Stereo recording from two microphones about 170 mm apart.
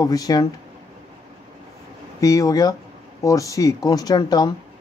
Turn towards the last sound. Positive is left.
turn(degrees=25)  # may be behind; listen again after turning